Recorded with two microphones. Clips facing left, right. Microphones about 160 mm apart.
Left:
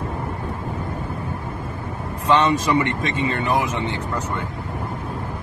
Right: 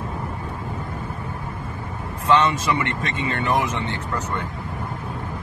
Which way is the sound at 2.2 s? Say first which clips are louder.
Left 1 dB; 15° left (ahead or behind).